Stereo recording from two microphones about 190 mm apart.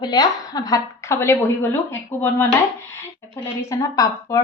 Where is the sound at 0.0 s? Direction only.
20° left (ahead or behind).